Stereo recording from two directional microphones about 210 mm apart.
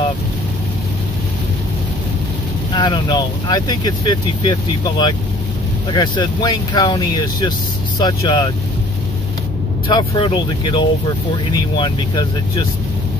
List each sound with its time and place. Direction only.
2.7 s speech: 20° left (ahead or behind)
9.8 s speech: 20° left (ahead or behind)